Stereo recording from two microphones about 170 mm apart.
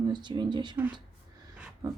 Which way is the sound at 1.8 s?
25° right (ahead or behind).